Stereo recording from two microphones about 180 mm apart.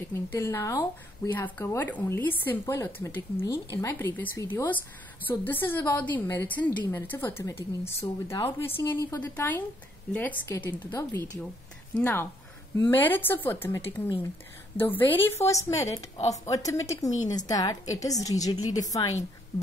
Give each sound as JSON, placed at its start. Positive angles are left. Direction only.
{"t": 0.1, "sound": "a woman's voice", "side_deg": 15}